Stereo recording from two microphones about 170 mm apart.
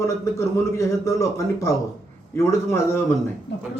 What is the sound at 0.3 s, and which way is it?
Speech, 15° left (ahead or behind).